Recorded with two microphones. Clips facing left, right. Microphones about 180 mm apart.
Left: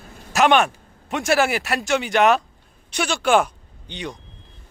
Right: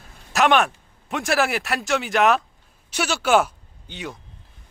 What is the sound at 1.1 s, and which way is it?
Speech, centre (ahead or behind).